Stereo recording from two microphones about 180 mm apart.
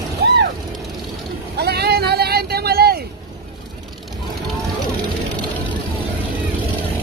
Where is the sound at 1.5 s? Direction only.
60° right (ahead or behind).